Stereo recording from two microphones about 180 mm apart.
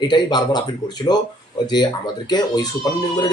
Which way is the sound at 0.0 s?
25° left (ahead or behind).